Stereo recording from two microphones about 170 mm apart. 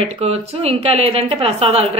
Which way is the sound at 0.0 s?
35° right (ahead or behind).